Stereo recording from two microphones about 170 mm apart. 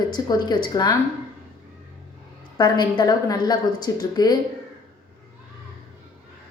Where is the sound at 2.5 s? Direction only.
25° left (ahead or behind).